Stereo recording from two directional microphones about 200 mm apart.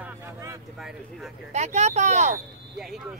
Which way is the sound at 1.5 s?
35° right (ahead or behind).